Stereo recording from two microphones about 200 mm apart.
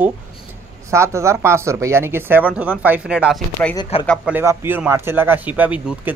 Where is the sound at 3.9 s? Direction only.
30° left (ahead or behind).